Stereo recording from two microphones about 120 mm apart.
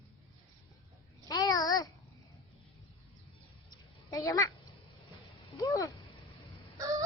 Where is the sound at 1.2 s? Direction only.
30° left (ahead or behind).